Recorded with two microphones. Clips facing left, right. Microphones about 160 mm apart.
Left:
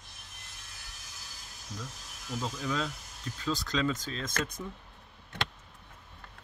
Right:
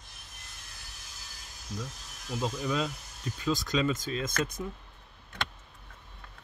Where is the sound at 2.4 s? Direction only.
15° right (ahead or behind).